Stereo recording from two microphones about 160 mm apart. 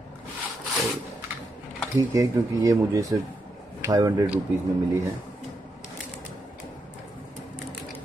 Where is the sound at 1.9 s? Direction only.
20° right (ahead or behind).